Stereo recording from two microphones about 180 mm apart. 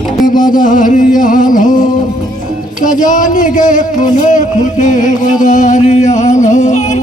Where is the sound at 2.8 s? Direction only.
45° left (ahead or behind).